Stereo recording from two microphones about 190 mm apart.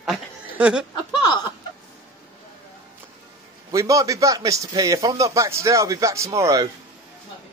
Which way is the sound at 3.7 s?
15° right (ahead or behind).